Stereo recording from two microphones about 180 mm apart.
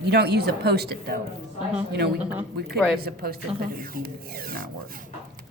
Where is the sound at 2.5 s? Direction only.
65° right (ahead or behind).